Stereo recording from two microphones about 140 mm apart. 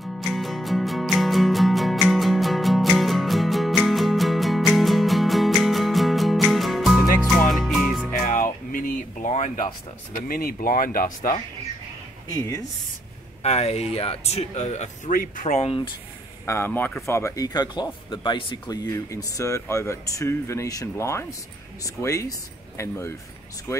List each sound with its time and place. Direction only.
0.0 s music: centre (ahead or behind)
8.1 s music: 75° left (ahead or behind)
10.2 s speech: 90° left
12.3 s speech: 25° left (ahead or behind)
13.4 s speech: 50° left (ahead or behind)
16.4 s speech: 15° left (ahead or behind)